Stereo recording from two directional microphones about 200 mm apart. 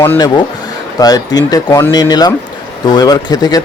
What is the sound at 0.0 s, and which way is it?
Speech, 15° left (ahead or behind).